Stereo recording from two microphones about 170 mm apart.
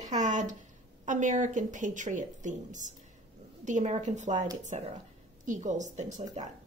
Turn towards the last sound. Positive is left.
turn(degrees=-45)  # may be behind; listen again after turning